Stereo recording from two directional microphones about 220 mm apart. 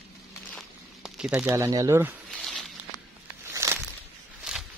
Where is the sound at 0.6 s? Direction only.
Centre (ahead or behind).